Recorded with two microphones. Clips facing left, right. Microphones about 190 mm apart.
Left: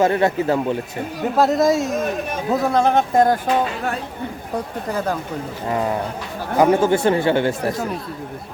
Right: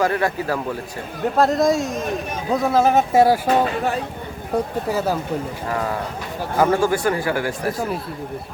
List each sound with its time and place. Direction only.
0.0 s speech: 25° left (ahead or behind)
1.2 s speech: centre (ahead or behind)
5.6 s speech: 20° left (ahead or behind)